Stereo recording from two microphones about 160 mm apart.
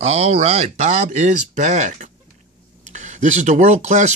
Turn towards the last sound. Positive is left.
turn(degrees=-45)  # may be behind; listen again after turning